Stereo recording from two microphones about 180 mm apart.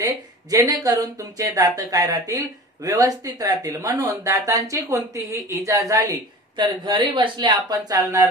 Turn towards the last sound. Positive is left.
turn(degrees=-25)  # may be behind; listen again after turning